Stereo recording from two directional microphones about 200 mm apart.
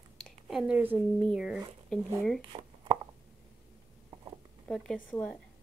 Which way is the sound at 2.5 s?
25° right (ahead or behind).